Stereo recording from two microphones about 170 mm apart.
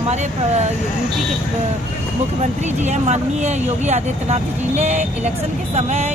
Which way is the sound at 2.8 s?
45° right (ahead or behind).